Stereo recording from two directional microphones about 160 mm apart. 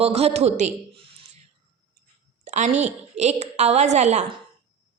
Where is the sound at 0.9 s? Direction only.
35° right (ahead or behind).